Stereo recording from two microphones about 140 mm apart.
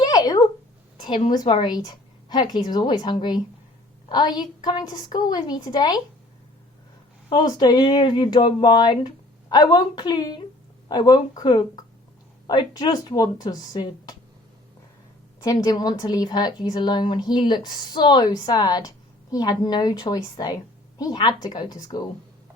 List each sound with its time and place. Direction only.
0.0 s a sound: 30° left (ahead or behind)
1.3 s a woman's voice: 30° left (ahead or behind)
7.3 s a woman's voice: 30° left (ahead or behind)
15.4 s a woman's voice: 25° left (ahead or behind)